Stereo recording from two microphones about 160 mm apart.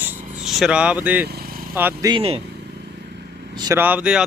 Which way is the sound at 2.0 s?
35° right (ahead or behind).